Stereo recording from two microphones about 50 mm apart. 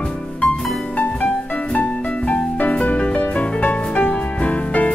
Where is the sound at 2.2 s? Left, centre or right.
Left.